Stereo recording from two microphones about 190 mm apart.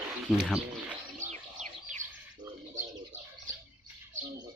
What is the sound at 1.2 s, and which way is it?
Bird, 40° right (ahead or behind).